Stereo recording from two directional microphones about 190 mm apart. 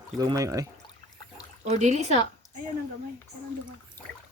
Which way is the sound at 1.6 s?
35° right (ahead or behind).